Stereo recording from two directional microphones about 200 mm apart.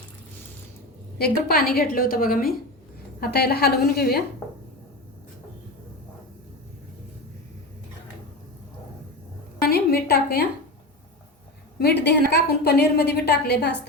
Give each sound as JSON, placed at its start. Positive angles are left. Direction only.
{"t": 1.2, "sound": "a woman's voice", "side_deg": 50}
{"t": 9.6, "sound": "a sound", "side_deg": 50}
{"t": 11.8, "sound": "a woman's voice", "side_deg": 55}